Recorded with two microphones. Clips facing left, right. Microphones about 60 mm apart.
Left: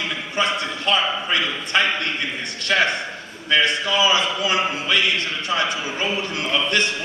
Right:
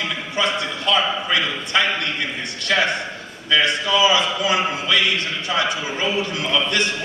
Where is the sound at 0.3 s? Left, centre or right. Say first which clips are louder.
Even; left.